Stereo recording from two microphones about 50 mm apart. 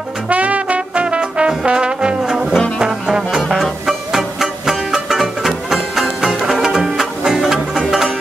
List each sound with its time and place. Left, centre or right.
0.3 s trombone: right
2.8 s brass instrument: centre
3.3 s music: centre